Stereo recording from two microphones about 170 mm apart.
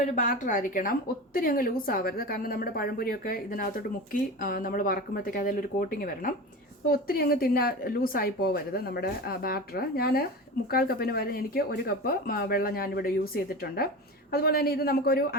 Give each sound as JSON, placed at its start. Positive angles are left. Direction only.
{"t": 0.0, "sound": "a woman's voice", "side_deg": 50}